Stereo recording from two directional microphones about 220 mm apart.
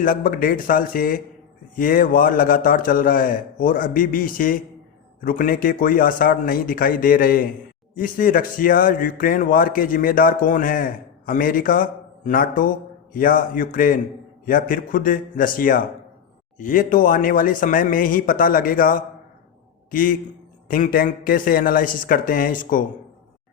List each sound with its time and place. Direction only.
0.0 s speech: 40° left (ahead or behind)